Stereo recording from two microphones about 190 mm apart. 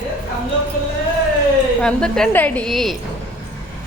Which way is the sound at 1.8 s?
5° left (ahead or behind).